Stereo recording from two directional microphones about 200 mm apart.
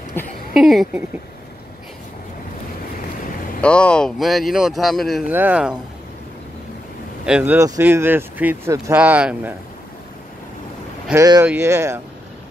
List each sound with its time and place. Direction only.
0.2 s speech: 10° left (ahead or behind)
0.6 s speech: centre (ahead or behind)
3.6 s speech: 5° left (ahead or behind)
7.2 s speech: 5° right (ahead or behind)
11.1 s speech: 15° right (ahead or behind)